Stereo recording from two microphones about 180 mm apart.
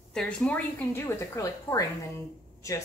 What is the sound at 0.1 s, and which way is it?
A woman's voice, 5° left (ahead or behind).